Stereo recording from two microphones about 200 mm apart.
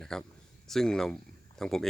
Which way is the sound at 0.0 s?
5° left (ahead or behind).